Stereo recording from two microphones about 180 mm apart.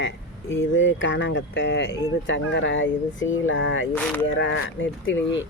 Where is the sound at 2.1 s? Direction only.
85° left.